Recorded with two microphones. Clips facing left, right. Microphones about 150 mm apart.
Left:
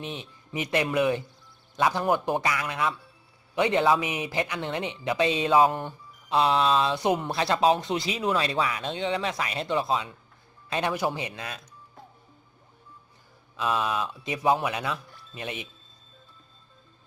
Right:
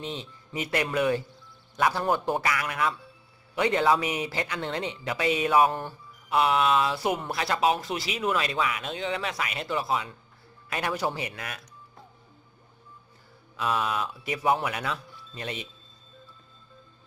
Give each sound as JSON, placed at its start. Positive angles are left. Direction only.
{"t": 0.0, "sound": "speech", "side_deg": 15}
{"t": 13.6, "sound": "speech", "side_deg": 20}